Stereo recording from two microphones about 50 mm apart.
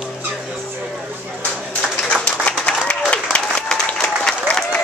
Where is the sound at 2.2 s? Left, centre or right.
Left.